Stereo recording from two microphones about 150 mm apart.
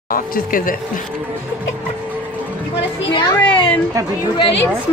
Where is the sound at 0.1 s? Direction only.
70° left (ahead or behind).